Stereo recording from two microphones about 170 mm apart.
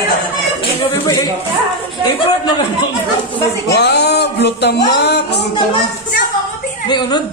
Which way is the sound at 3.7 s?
80° left.